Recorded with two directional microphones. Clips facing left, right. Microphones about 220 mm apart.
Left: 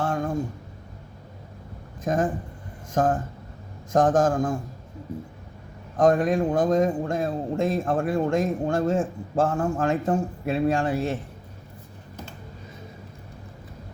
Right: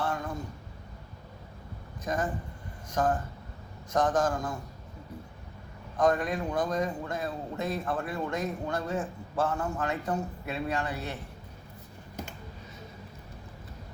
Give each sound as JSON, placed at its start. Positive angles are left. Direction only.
{"t": 0.0, "sound": "a sound", "side_deg": 50}
{"t": 2.0, "sound": "a man's voice", "side_deg": 50}
{"t": 6.0, "sound": "a man's voice", "side_deg": 45}